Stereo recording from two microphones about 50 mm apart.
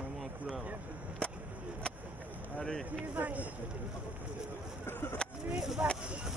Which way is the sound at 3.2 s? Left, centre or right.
Right.